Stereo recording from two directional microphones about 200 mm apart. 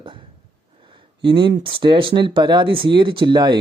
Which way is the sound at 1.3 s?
20° right (ahead or behind).